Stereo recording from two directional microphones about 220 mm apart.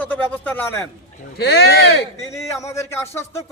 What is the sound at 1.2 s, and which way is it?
Speech, 45° left (ahead or behind).